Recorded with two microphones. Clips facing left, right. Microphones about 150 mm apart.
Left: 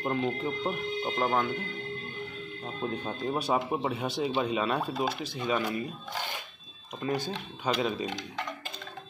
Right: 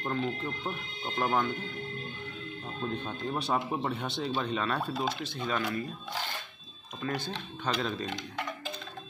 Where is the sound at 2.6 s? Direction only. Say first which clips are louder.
Left 2 dB; 10° left (ahead or behind).